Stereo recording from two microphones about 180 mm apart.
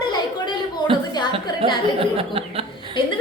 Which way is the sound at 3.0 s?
30° left (ahead or behind).